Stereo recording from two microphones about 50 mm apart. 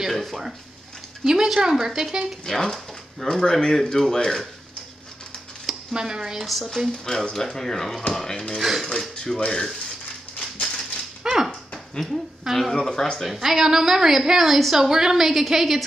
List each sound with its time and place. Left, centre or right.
0.1 s a sound: centre
1.2 s speech: centre
2.4 s speech: centre
5.7 s speech: centre
6.4 s a woman's voice: centre
6.9 s speech: centre
8.5 s a woman's voice: centre
9.1 s speech: centre
10.6 s dog: centre
11.3 s dog: centre
11.7 s a sound: centre
12.4 s a woman's voice: centre
13.2 s a woman's voice: centre